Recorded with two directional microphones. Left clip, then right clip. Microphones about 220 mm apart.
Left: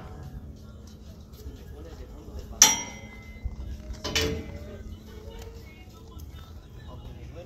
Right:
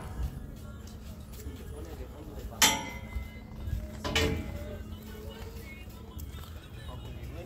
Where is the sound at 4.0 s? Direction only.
50° left (ahead or behind).